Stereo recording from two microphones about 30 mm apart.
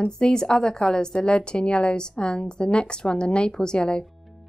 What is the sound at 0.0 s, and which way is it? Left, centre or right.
A woman's voice, left.